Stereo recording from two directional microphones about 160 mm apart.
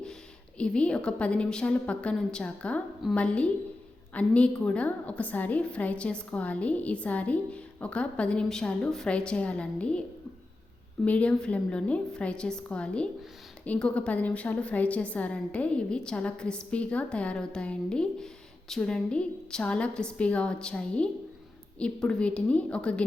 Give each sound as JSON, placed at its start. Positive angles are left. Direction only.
{"t": 0.6, "sound": "a woman's voice", "side_deg": 5}
{"t": 11.0, "sound": "a woman's voice", "side_deg": 10}